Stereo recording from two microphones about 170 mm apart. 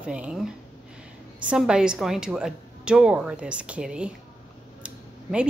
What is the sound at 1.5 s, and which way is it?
A woman's voice, 5° right (ahead or behind).